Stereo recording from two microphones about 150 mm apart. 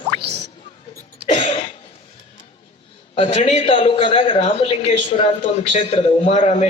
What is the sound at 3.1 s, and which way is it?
Speech, 45° left (ahead or behind).